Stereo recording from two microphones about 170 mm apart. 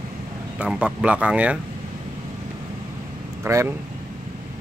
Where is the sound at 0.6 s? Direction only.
5° right (ahead or behind).